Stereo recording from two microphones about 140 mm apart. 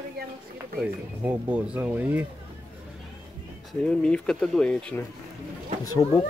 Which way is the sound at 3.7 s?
5° left (ahead or behind).